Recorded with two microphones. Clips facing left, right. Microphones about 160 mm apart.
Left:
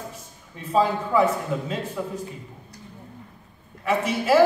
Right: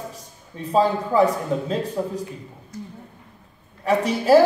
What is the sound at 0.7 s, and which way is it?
A man's voice, 35° right (ahead or behind).